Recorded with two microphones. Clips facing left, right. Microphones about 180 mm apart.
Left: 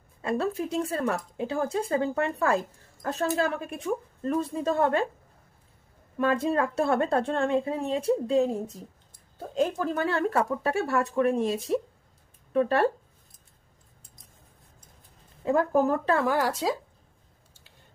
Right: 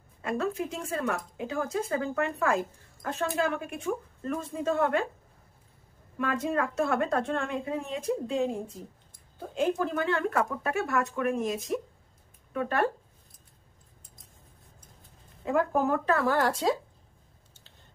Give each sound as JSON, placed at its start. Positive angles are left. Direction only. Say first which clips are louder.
{"t": 0.2, "sound": "a woman's voice", "louder": "left 2 dB", "side_deg": 30}
{"t": 6.1, "sound": "a woman's voice", "louder": "left 4 dB", "side_deg": 30}
{"t": 15.4, "sound": "a woman's voice", "louder": "left 3 dB", "side_deg": 35}
{"t": 16.3, "sound": "speech", "louder": "even", "side_deg": 10}